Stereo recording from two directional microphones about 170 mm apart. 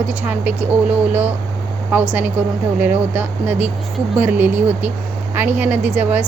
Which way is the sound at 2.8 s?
10° right (ahead or behind).